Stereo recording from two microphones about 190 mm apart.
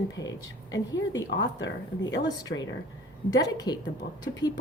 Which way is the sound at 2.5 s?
55° left (ahead or behind).